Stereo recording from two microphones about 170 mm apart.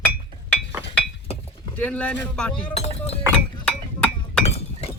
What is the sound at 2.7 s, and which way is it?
Speech, 40° left (ahead or behind).